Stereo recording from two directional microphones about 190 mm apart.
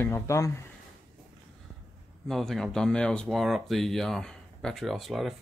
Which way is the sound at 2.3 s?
Centre (ahead or behind).